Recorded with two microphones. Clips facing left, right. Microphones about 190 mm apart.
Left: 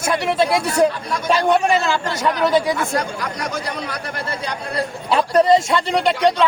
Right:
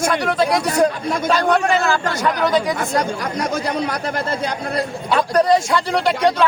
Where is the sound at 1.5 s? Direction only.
25° left (ahead or behind).